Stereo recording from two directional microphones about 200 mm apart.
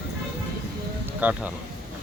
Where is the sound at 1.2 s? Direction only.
5° right (ahead or behind).